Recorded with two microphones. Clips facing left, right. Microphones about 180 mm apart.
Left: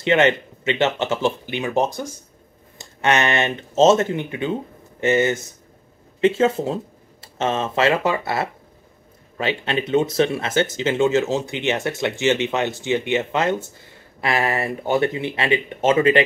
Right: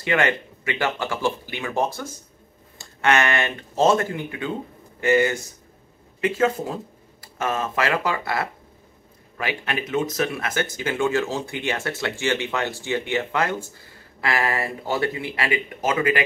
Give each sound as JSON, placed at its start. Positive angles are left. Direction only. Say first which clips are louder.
{"t": 0.0, "sound": "speech", "louder": "left 5 dB", "side_deg": 20}